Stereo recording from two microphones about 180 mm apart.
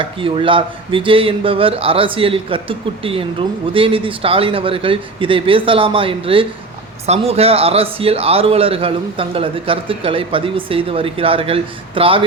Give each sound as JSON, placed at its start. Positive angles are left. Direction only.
{"t": 0.0, "sound": "a man's voice", "side_deg": -30}